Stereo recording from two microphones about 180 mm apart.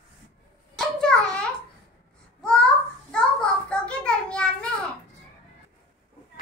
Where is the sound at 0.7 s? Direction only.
5° left (ahead or behind).